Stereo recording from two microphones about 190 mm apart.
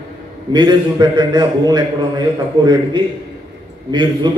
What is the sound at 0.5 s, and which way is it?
A man's voice, 20° right (ahead or behind).